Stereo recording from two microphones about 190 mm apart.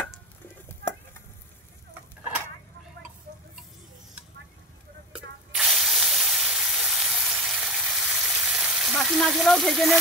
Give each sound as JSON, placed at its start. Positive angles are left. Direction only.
{"t": 5.1, "sound": "spray", "side_deg": -5}